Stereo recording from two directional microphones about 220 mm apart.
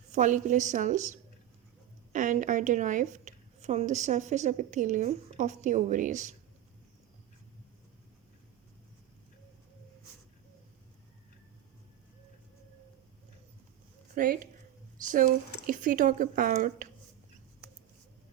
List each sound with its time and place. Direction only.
0.1 s a woman's voice: 35° right (ahead or behind)
14.2 s a woman's voice: 40° right (ahead or behind)